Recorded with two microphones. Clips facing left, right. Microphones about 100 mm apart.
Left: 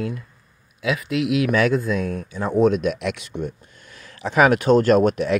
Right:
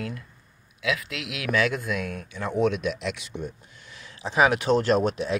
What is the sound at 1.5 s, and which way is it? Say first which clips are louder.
Speech: even; 40° left (ahead or behind).